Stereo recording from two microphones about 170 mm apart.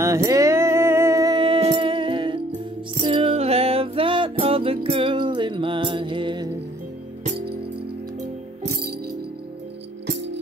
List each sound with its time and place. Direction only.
0.0 s music: 20° right (ahead or behind)